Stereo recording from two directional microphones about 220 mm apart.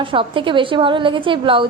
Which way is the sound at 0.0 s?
25° right (ahead or behind).